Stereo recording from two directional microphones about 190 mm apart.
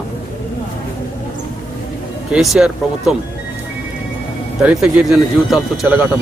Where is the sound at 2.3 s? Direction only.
5° right (ahead or behind).